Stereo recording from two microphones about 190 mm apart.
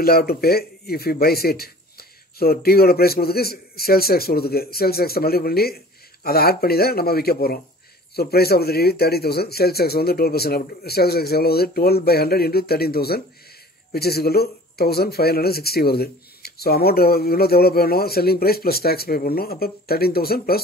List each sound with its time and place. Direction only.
0.0 s speech: 55° left (ahead or behind)